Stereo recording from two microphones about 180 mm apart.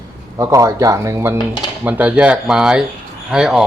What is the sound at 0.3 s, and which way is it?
Speech, 20° right (ahead or behind).